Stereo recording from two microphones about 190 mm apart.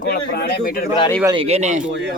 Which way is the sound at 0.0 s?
55° left (ahead or behind).